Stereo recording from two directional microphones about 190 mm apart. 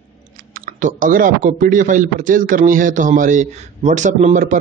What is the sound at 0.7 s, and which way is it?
A man's voice, 45° right (ahead or behind).